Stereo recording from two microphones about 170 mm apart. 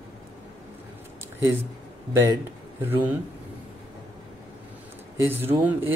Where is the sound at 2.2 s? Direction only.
15° right (ahead or behind).